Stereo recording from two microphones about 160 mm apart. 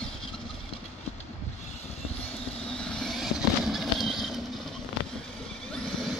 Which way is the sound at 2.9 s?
Centre (ahead or behind).